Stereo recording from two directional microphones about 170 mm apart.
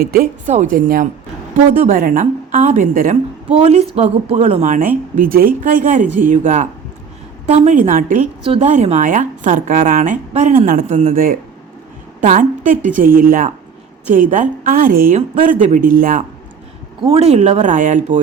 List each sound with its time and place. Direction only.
0.0 s speech: 65° right (ahead or behind)
0.4 s speech: 45° right (ahead or behind)
2.5 s speech: 45° right (ahead or behind)
3.5 s a woman's voice: 40° right (ahead or behind)
17.0 s a woman's voice: 35° right (ahead or behind)